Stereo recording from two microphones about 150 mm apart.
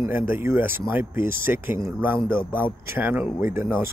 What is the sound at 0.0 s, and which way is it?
Speech, 15° right (ahead or behind).